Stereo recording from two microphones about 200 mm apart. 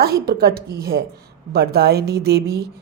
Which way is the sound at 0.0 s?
50° right (ahead or behind).